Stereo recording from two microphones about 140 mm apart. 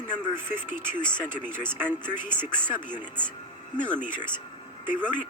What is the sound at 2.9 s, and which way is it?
Speech, 15° right (ahead or behind).